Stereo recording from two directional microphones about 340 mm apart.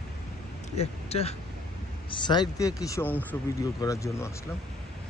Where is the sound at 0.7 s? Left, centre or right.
Centre.